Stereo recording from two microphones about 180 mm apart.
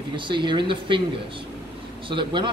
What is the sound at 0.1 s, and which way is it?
Speech, 25° right (ahead or behind).